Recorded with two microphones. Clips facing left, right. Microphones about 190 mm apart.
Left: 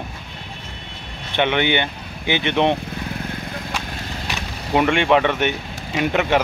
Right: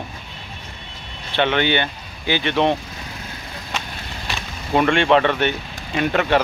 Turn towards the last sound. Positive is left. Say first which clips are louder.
# even
turn(degrees=15)  # may be behind; listen again after turning